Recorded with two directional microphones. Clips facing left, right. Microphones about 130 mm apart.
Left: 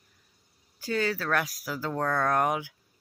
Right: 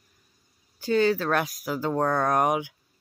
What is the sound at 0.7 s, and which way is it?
Speech, 25° right (ahead or behind).